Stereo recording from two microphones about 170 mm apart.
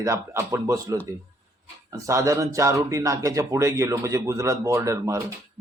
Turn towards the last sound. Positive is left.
turn(degrees=-20)  # may be behind; listen again after turning